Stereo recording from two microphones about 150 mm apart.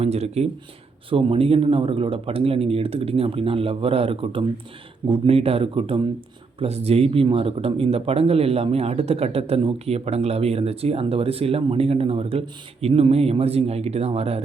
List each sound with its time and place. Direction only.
0.0 s speech: 45° right (ahead or behind)